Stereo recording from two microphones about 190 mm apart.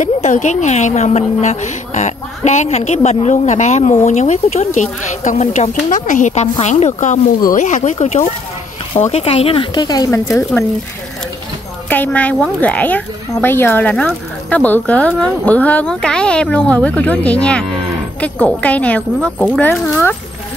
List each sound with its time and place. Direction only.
0.0 s a woman's voice: 40° left (ahead or behind); by 10.2 s 20° left (ahead or behind)
11.9 s speech: 10° left (ahead or behind)